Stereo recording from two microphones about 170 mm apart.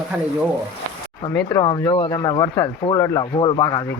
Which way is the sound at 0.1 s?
5° right (ahead or behind).